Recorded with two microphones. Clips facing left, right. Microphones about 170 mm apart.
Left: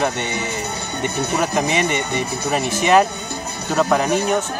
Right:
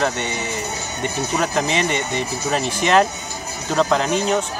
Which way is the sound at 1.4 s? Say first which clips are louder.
Left 1 dB; 10° left (ahead or behind).